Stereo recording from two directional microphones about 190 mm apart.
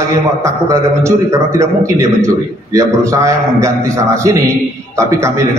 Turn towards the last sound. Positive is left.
turn(degrees=-15)  # may be behind; listen again after turning